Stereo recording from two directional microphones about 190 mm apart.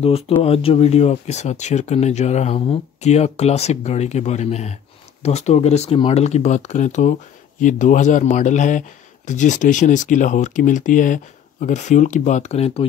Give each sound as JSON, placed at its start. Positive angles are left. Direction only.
{"t": 0.0, "sound": "speech", "side_deg": 30}